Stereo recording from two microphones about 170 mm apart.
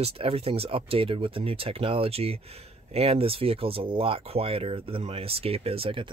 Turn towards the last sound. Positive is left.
turn(degrees=-35)  # may be behind; listen again after turning